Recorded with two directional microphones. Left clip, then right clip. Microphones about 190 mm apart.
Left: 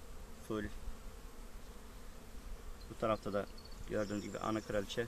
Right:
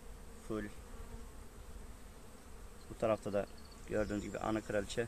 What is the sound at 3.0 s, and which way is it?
Speech, 15° right (ahead or behind).